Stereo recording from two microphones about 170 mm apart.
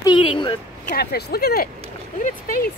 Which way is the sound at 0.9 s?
70° left (ahead or behind).